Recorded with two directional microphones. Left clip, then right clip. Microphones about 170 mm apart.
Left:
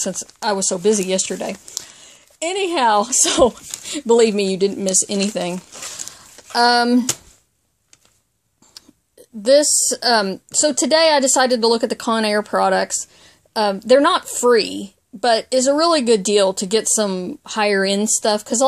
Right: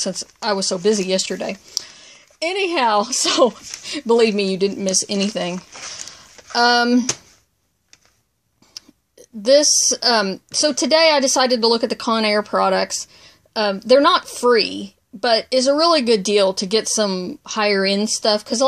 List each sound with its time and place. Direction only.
0.0 s speech: 10° left (ahead or behind)
5.6 s speech: 35° left (ahead or behind)
6.5 s speech: 5° left (ahead or behind)
9.4 s speech: 5° left (ahead or behind)